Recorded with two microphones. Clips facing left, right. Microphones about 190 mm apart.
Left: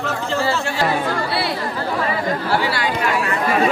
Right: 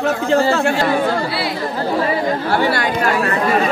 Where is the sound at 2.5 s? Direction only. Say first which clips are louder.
Right 3 dB; 50° right (ahead or behind).